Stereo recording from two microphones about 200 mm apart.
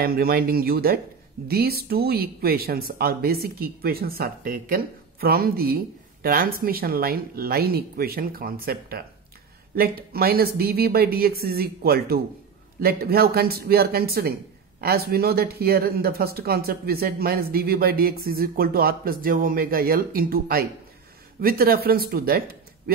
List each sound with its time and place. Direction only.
0.0 s speech: 50° right (ahead or behind)